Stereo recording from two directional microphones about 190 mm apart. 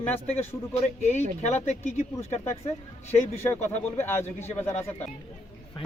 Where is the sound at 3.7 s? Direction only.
10° left (ahead or behind).